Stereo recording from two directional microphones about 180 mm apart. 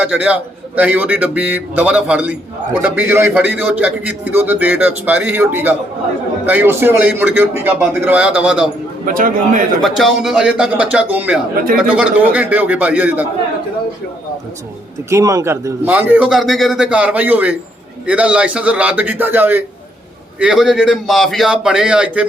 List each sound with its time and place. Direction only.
0.0 s a man's voice: 5° right (ahead or behind)
9.0 s a man's voice: 50° right (ahead or behind)
9.8 s a man's voice: centre (ahead or behind)
15.1 s a man's voice: 20° right (ahead or behind)